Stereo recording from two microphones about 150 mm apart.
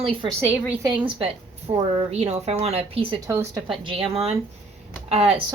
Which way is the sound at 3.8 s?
35° right (ahead or behind).